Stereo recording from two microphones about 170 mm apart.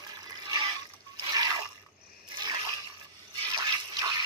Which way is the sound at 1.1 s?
25° right (ahead or behind).